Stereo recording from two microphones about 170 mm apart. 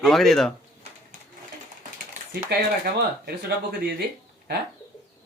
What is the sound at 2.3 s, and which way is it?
Speech, 70° right (ahead or behind).